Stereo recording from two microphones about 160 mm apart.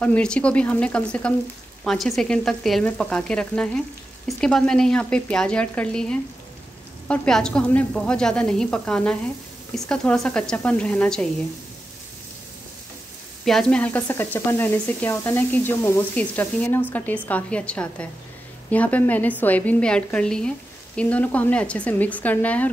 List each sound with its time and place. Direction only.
0.0 s a woman's voice: 5° left (ahead or behind)
13.5 s speech: 5° left (ahead or behind)